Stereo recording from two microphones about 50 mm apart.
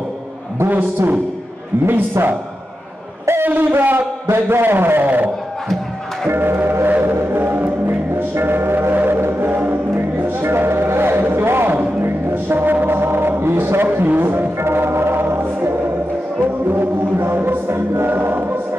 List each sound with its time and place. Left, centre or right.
0.7 s a man's voice: right
3.4 s speech: right
4.3 s a man's voice: right
6.2 s music: right